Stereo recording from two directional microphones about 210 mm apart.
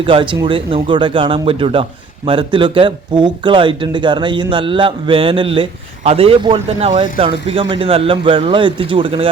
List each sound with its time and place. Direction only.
0.0 s speech: 25° right (ahead or behind)